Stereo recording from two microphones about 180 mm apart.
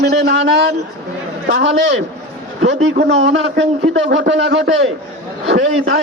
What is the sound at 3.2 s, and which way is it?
A man's voice, 85° right.